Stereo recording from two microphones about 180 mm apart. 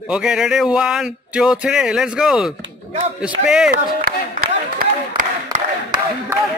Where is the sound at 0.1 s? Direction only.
5° right (ahead or behind).